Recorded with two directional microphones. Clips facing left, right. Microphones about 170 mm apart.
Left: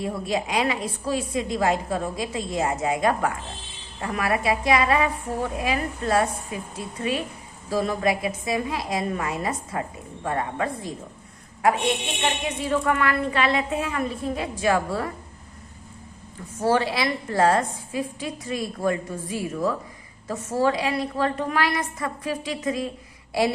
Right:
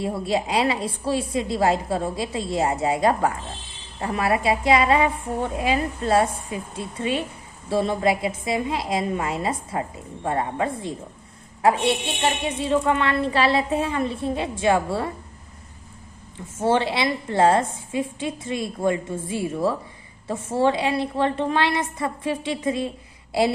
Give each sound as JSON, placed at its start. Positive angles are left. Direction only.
{"t": 0.0, "sound": "a woman's voice", "side_deg": -30}
{"t": 12.2, "sound": "a woman's voice", "side_deg": -30}
{"t": 16.6, "sound": "a woman's voice", "side_deg": -25}